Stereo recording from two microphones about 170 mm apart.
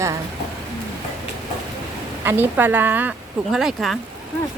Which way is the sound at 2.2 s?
10° right (ahead or behind).